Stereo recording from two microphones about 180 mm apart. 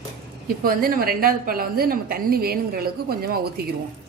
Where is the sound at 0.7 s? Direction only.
55° right (ahead or behind).